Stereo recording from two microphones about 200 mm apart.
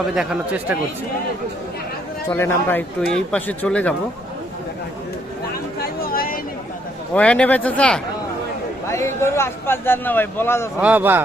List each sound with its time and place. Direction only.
0.1 s speech: 5° right (ahead or behind)
2.3 s a man's voice: 10° left (ahead or behind)
5.8 s a sound: 45° left (ahead or behind)
7.1 s a man's voice: 5° left (ahead or behind)
10.8 s a man's voice: 10° right (ahead or behind)